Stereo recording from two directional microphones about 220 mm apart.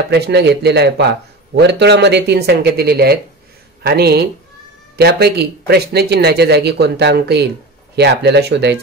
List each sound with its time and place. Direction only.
0.1 s speech: 50° right (ahead or behind)